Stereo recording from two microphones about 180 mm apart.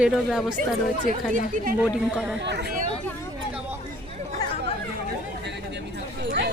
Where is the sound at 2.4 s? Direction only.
70° right (ahead or behind).